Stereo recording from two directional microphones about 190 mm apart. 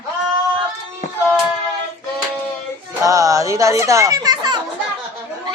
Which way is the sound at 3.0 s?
15° right (ahead or behind).